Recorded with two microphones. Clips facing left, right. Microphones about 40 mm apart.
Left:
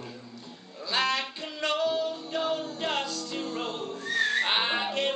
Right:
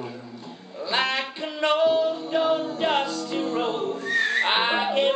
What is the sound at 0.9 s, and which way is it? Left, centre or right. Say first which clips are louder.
Music: right 3 dB; centre.